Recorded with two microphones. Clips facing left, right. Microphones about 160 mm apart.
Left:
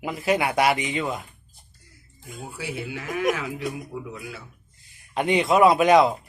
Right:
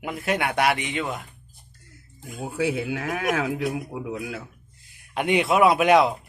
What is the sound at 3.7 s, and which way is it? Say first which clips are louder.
Speech: right 3 dB; 70° right (ahead or behind).